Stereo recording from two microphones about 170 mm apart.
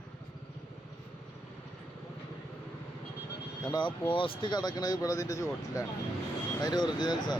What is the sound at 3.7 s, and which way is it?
Speech, 25° left (ahead or behind).